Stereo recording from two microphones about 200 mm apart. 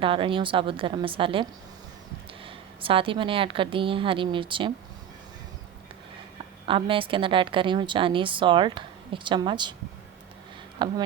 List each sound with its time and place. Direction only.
0.0 s a woman's voice: 25° right (ahead or behind)
6.7 s a woman's voice: 25° right (ahead or behind)
10.8 s a woman's voice: 20° right (ahead or behind)